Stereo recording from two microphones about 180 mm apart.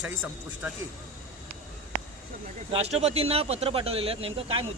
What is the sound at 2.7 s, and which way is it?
Speech, 35° right (ahead or behind).